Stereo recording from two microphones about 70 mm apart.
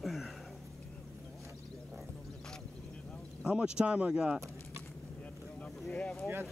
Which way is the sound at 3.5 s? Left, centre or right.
Centre.